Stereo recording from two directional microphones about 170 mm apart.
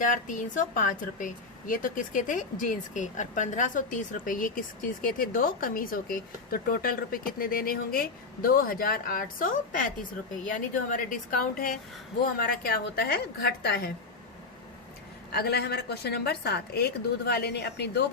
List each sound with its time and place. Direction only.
0.0 s a woman's voice: 50° left (ahead or behind); by 13.9 s 70° left (ahead or behind)
15.3 s a woman's voice: 70° left (ahead or behind)